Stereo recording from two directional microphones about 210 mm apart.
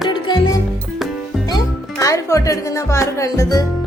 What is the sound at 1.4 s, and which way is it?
Music, 15° left (ahead or behind).